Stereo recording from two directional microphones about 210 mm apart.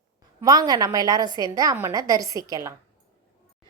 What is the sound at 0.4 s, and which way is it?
A woman's voice, 20° right (ahead or behind).